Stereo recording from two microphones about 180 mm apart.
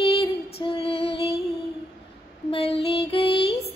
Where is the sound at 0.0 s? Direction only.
30° left (ahead or behind).